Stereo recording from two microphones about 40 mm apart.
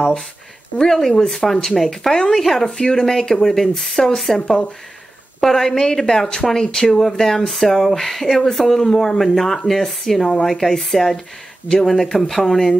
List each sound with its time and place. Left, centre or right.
0.8 s speech: centre
2.3 s speech: centre
2.6 s speech: centre
5.4 s speech: centre